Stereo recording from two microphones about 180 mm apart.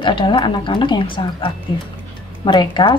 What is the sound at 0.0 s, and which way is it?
Speech, 25° left (ahead or behind).